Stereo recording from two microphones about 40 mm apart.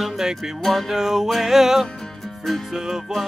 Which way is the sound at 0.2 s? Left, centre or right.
Centre.